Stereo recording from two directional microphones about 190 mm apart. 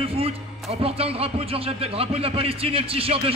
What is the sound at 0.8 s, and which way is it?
Speech, 30° right (ahead or behind).